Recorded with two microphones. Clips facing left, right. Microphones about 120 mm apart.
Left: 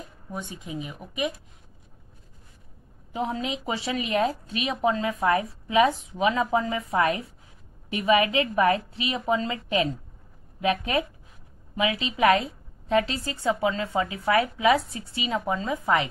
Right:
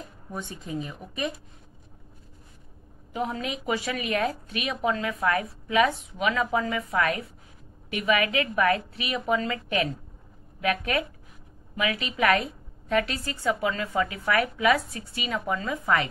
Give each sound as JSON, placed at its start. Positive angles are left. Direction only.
{"t": 0.3, "sound": "speech", "side_deg": 15}
{"t": 3.1, "sound": "a woman's voice", "side_deg": 25}